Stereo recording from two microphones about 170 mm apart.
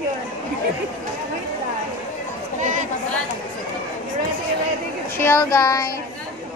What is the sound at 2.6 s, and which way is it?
Chatter, 45° right (ahead or behind).